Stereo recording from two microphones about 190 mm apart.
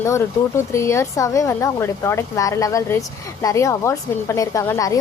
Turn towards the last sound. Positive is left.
turn(degrees=15)  # may be behind; listen again after turning